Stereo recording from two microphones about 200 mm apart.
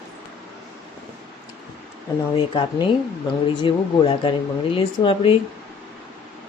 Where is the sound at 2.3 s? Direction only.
25° left (ahead or behind).